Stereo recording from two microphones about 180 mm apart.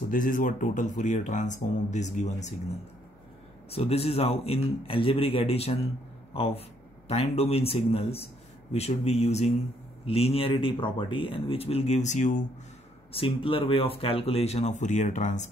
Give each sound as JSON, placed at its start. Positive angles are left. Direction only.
{"t": 0.1, "sound": "speech", "side_deg": 50}
{"t": 3.7, "sound": "speech", "side_deg": 35}
{"t": 13.1, "sound": "speech", "side_deg": 30}